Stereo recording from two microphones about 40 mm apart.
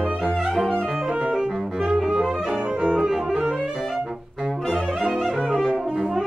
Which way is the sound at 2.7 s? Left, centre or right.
Right.